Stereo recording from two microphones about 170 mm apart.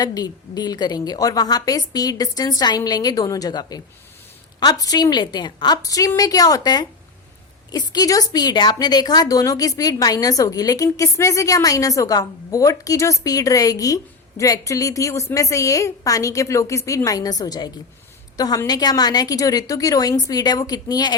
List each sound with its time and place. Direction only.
0.0 s a woman's voice: 20° left (ahead or behind)